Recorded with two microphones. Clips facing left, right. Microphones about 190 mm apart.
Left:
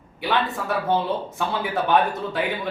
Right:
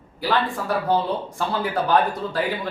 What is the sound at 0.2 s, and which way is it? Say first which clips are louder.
Speech: right 1 dB; centre (ahead or behind).